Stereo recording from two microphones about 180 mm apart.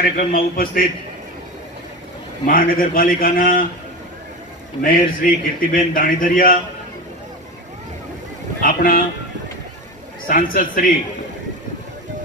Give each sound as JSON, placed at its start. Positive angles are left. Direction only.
{"t": 0.2, "sound": "a man's voice", "side_deg": 50}
{"t": 2.4, "sound": "a man's voice", "side_deg": 50}
{"t": 4.8, "sound": "a man's voice", "side_deg": 50}
{"t": 8.6, "sound": "a man's voice", "side_deg": 50}
{"t": 10.2, "sound": "a man's voice", "side_deg": 50}